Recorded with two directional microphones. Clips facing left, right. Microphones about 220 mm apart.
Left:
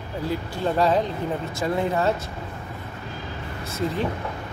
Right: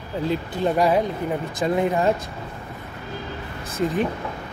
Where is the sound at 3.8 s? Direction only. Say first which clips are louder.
Right 4 dB; 15° right (ahead or behind).